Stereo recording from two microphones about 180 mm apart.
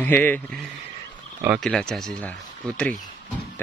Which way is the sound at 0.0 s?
10° left (ahead or behind).